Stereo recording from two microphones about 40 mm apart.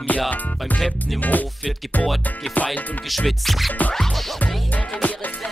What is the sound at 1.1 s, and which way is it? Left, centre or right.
Music, left.